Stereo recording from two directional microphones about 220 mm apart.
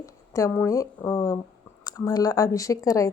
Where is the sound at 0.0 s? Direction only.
15° left (ahead or behind).